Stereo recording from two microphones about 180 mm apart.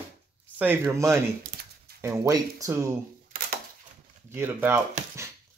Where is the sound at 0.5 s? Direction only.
15° right (ahead or behind).